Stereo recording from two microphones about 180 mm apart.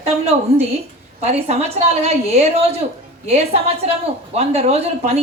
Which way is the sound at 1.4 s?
35° right (ahead or behind).